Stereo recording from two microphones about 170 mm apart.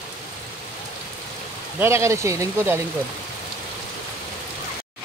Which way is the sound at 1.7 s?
15° right (ahead or behind).